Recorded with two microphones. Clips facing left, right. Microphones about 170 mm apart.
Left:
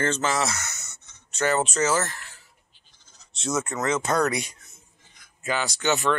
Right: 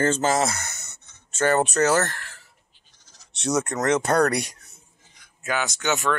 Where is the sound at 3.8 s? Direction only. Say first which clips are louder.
Right 3 dB; 65° right (ahead or behind).